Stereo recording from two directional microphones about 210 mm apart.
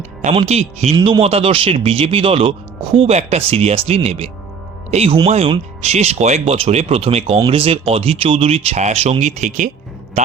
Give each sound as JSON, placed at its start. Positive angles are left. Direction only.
{"t": 0.2, "sound": "speech", "side_deg": -30}